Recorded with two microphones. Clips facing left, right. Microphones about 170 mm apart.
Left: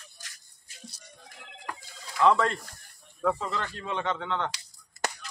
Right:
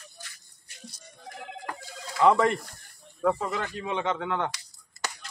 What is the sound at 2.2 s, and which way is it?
Speech, 15° right (ahead or behind).